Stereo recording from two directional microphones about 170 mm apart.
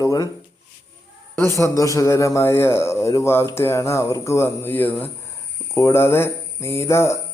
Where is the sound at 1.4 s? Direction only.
15° left (ahead or behind).